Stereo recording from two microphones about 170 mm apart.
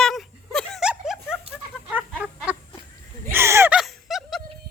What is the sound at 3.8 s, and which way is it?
Music, centre (ahead or behind).